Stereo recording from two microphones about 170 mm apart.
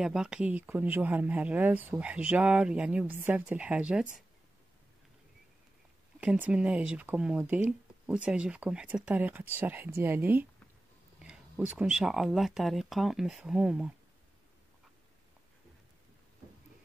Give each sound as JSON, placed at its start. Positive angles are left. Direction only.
{"t": 0.0, "sound": "speech", "side_deg": -5}
{"t": 6.2, "sound": "speech", "side_deg": -10}